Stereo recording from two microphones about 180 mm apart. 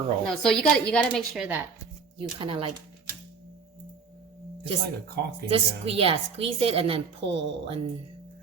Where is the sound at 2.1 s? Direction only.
30° right (ahead or behind).